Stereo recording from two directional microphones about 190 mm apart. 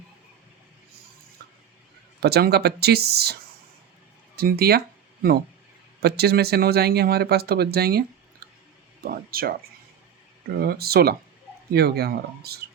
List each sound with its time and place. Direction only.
2.2 s speech: 60° right (ahead or behind)
4.4 s speech: 55° right (ahead or behind)
6.0 s speech: 60° right (ahead or behind)